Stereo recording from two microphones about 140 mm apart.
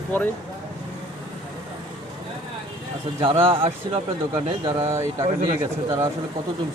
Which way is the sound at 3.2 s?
40° right (ahead or behind).